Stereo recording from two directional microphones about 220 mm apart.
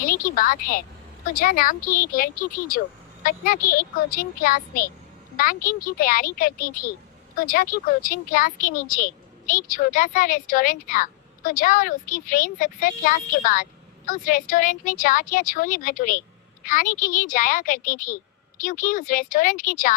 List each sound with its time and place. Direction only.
0.0 s a woman's voice: 40° left (ahead or behind)